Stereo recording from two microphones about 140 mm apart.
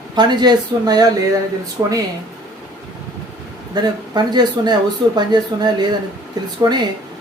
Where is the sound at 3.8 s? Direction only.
30° right (ahead or behind).